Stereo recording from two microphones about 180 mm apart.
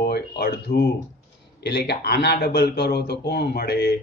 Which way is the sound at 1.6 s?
70° left (ahead or behind).